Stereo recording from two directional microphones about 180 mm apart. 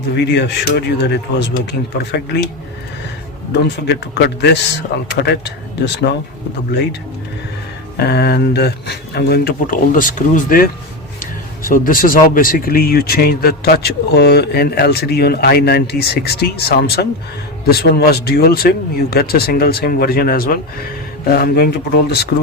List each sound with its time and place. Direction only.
0.2 s speech: 70° left (ahead or behind)
2.1 s speech: 70° left (ahead or behind)
3.5 s speech: 70° left (ahead or behind)
7.9 s speech: 60° left (ahead or behind)